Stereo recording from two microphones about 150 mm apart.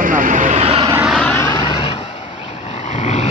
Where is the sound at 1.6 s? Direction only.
40° left (ahead or behind).